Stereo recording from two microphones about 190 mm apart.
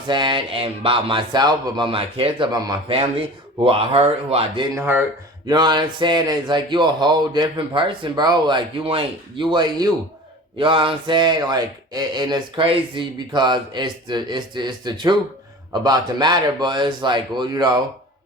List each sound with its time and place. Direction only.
0.1 s speech: 25° right (ahead or behind)
4.7 s speech: 10° right (ahead or behind)
5.5 s speech: 20° right (ahead or behind)